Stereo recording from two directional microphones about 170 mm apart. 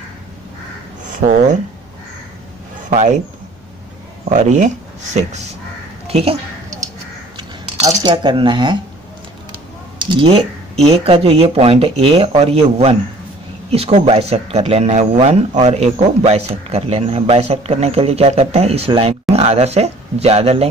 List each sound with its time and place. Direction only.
1.1 s speech: 50° right (ahead or behind)
2.9 s speech: 45° right (ahead or behind)
4.3 s speech: 45° right (ahead or behind)
6.0 s a sound: 35° right (ahead or behind)
7.3 s dishes: 25° right (ahead or behind)
9.9 s speech: 30° right (ahead or behind)